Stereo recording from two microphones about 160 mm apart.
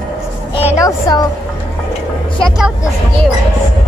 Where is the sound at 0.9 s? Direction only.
25° left (ahead or behind).